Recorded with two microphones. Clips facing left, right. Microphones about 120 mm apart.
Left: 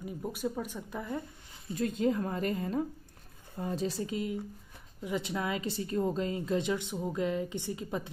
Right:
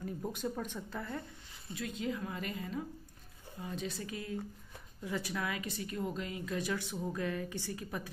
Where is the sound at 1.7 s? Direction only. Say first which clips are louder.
Left 8 dB; 45° left (ahead or behind).